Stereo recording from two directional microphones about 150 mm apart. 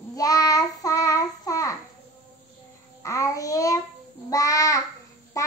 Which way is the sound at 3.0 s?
20° left (ahead or behind).